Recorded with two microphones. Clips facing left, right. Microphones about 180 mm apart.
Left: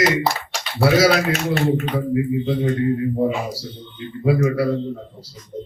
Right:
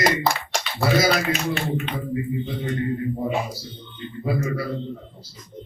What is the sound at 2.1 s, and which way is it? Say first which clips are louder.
Speech: left 7 dB; 65° left (ahead or behind).